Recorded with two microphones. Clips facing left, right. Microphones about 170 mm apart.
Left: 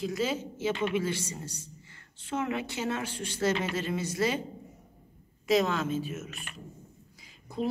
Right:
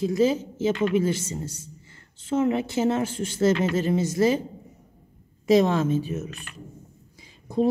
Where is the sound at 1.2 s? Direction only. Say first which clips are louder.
Right 6 dB; 25° right (ahead or behind).